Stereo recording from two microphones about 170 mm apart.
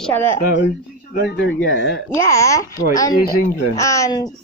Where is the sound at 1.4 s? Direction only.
90° left.